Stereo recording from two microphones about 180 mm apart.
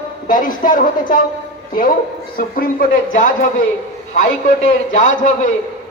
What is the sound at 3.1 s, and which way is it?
A man's voice, 45° left (ahead or behind).